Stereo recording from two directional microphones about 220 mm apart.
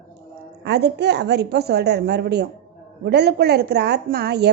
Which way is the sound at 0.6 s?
50° right (ahead or behind).